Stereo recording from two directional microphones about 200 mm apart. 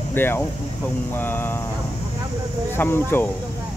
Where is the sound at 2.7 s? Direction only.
10° left (ahead or behind).